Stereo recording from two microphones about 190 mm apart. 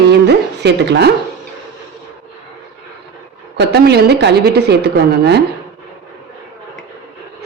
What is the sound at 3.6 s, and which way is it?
A woman's voice, 60° right (ahead or behind).